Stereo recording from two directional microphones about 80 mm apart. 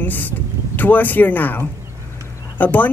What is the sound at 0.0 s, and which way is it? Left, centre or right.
Speech, left.